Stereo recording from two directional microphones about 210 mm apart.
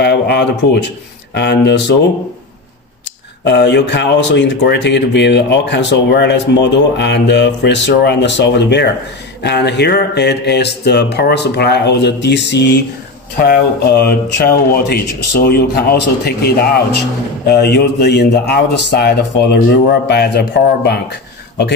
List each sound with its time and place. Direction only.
0.0 s speech: 55° left (ahead or behind)
3.4 s speech: 55° left (ahead or behind)